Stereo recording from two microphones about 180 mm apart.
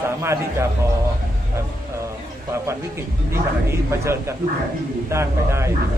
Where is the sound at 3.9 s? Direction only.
15° right (ahead or behind).